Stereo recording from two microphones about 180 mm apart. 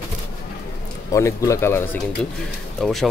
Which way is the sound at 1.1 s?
15° left (ahead or behind).